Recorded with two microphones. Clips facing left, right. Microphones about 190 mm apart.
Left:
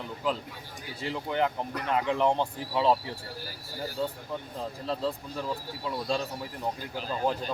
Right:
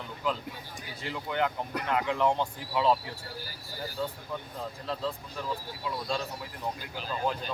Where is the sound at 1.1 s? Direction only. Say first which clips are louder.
Left 2 dB; 25° left (ahead or behind).